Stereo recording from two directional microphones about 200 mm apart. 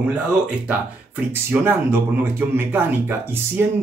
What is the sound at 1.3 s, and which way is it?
Speech, 10° right (ahead or behind).